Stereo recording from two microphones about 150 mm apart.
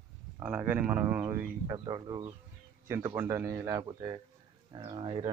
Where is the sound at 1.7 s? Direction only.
30° right (ahead or behind).